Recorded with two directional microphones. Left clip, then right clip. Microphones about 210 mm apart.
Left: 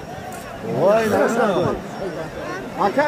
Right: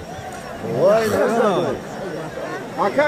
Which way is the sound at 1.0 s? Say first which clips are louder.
Left 1 dB; 35° left (ahead or behind).